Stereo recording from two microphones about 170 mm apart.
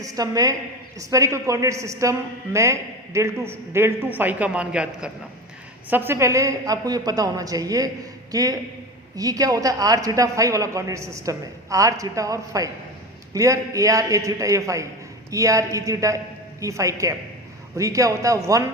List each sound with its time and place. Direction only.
0.0 s a man's voice: 20° right (ahead or behind)